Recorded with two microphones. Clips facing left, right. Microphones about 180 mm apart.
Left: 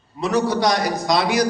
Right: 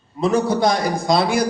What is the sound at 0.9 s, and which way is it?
Speech, 30° right (ahead or behind).